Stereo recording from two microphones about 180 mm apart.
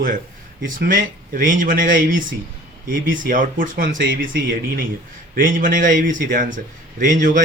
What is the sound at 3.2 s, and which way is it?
A man's voice, 50° right (ahead or behind).